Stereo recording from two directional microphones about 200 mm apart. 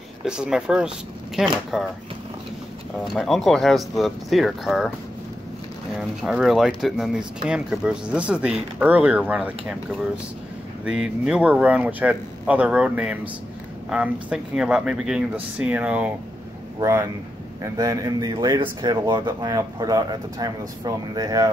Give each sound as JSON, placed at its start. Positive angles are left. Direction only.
{"t": 0.2, "sound": "speech", "side_deg": -5}
{"t": 3.2, "sound": "speech", "side_deg": 0}
{"t": 5.9, "sound": "speech", "side_deg": 0}
{"t": 10.9, "sound": "speech", "side_deg": -5}
{"t": 17.7, "sound": "speech", "side_deg": -20}